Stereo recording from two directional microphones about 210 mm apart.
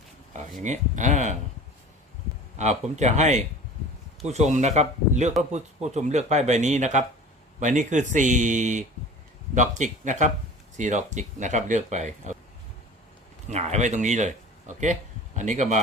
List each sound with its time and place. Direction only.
0.3 s speech: 35° right (ahead or behind)
2.6 s speech: 35° right (ahead or behind)
13.5 s speech: 30° right (ahead or behind)